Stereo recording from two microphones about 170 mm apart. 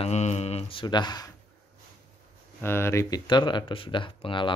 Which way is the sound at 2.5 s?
15° left (ahead or behind).